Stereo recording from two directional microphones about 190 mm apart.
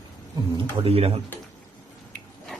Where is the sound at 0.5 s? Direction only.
30° right (ahead or behind).